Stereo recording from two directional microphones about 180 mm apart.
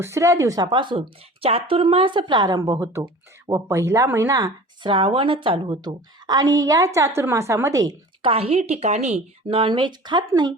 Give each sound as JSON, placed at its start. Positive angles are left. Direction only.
{"t": 0.0, "sound": "a woman's voice", "side_deg": -15}
{"t": 8.3, "sound": "speech", "side_deg": -35}